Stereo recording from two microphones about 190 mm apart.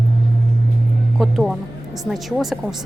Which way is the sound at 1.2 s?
Centre (ahead or behind).